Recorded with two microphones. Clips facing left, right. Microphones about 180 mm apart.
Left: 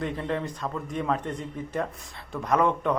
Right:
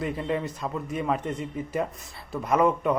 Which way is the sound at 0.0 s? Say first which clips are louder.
Right 1 dB; 5° right (ahead or behind).